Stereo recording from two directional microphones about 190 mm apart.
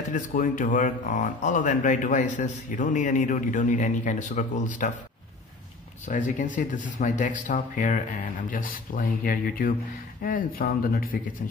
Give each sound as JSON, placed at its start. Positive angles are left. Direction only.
{"t": 0.1, "sound": "speech", "side_deg": 45}
{"t": 6.0, "sound": "speech", "side_deg": 40}